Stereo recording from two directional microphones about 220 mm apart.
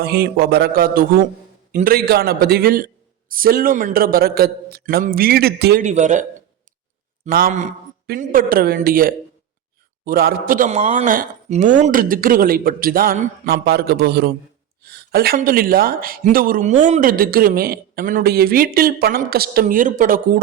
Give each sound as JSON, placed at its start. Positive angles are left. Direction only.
{"t": 0.0, "sound": "a man's voice", "side_deg": -45}
{"t": 5.8, "sound": "speech", "side_deg": -35}
{"t": 7.3, "sound": "speech", "side_deg": -40}